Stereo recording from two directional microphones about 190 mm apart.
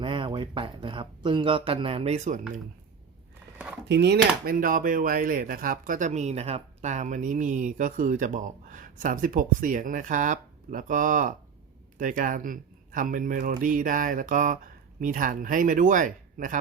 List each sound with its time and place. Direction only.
0.0 s speech: 25° right (ahead or behind)
3.8 s speech: 60° right (ahead or behind); by 16.6 s 45° right (ahead or behind)